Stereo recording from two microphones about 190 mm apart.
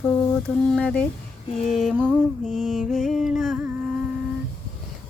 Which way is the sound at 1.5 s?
Centre (ahead or behind).